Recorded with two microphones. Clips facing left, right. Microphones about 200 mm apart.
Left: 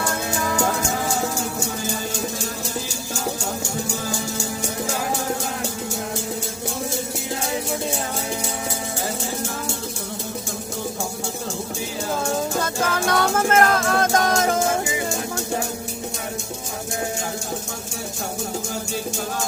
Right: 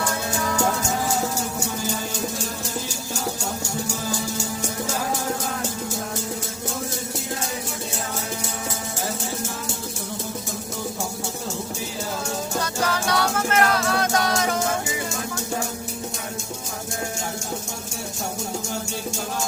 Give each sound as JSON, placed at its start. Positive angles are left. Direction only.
{"t": 12.6, "sound": "music", "side_deg": 50}